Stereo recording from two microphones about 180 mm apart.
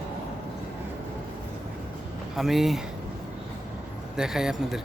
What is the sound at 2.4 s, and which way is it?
Speech, centre (ahead or behind).